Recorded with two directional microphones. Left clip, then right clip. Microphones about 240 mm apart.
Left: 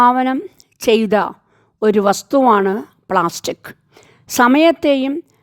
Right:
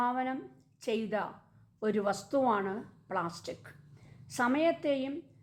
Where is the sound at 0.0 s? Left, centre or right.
Left.